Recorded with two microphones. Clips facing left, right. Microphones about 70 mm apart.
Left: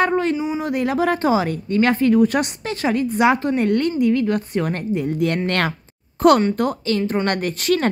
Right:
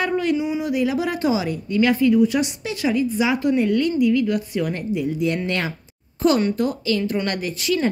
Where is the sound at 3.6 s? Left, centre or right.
Left.